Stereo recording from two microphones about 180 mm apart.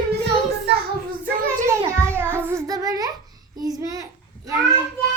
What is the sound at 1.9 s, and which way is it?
Child singing, 15° right (ahead or behind).